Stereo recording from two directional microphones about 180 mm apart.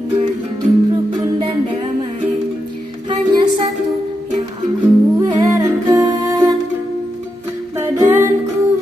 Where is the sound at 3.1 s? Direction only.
25° right (ahead or behind).